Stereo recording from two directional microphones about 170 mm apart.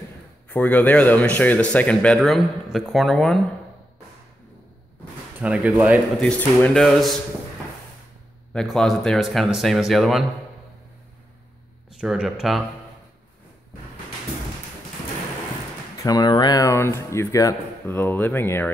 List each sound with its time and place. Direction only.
0.5 s speech: 10° left (ahead or behind)
5.4 s speech: 5° right (ahead or behind)
6.2 s speech: 5° left (ahead or behind)
8.5 s speech: centre (ahead or behind)
11.9 s speech: 5° right (ahead or behind)
16.0 s speech: 25° left (ahead or behind)